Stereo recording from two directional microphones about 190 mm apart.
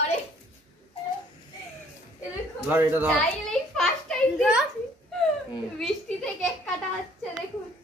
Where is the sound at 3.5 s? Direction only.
5° left (ahead or behind).